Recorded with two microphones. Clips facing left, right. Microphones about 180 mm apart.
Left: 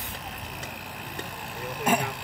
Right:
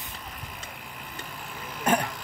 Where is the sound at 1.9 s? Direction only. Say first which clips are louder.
Right 1 dB; 10° left (ahead or behind).